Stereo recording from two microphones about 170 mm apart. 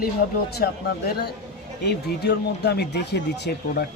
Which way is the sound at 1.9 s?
80° left.